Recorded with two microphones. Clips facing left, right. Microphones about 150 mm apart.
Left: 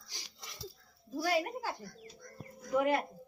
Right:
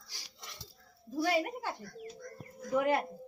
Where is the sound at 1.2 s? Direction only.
Centre (ahead or behind).